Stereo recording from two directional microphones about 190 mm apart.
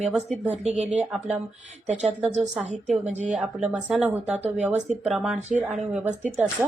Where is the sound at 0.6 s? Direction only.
35° right (ahead or behind).